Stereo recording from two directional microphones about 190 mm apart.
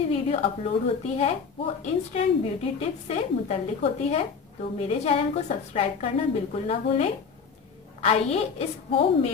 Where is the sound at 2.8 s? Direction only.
35° left (ahead or behind).